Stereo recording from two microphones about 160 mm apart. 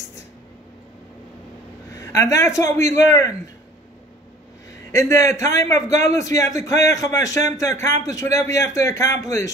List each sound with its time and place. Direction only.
2.0 s a man's voice: 20° left (ahead or behind)
4.9 s a man's voice: 20° left (ahead or behind)